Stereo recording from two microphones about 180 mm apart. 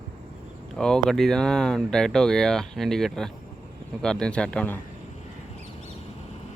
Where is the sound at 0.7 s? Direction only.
5° left (ahead or behind).